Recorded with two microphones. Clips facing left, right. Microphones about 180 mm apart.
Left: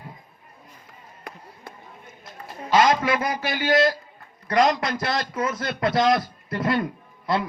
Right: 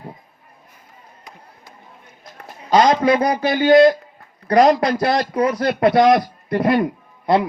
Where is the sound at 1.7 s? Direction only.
60° left (ahead or behind).